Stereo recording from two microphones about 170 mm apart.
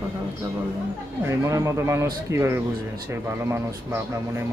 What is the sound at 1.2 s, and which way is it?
Speech, 15° right (ahead or behind).